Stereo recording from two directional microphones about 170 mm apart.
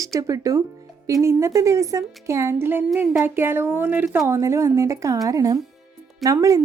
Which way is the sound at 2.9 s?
5° right (ahead or behind).